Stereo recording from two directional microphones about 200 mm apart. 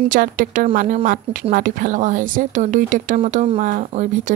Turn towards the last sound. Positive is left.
turn(degrees=-40)  # may be behind; listen again after turning